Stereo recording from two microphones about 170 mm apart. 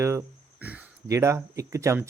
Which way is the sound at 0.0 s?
15° right (ahead or behind).